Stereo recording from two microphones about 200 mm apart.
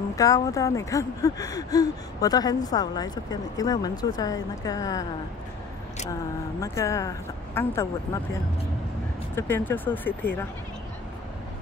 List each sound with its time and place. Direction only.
0.1 s speech: 15° left (ahead or behind)
6.6 s speech: 15° left (ahead or behind)
9.3 s speech: 10° left (ahead or behind)